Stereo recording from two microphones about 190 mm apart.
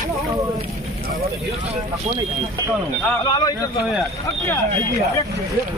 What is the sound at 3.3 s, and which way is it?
Speech, 20° left (ahead or behind).